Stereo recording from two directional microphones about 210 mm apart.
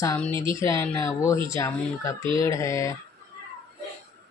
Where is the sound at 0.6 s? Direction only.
15° left (ahead or behind).